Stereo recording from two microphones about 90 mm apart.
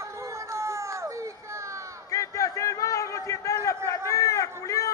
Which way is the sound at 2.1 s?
40° left (ahead or behind).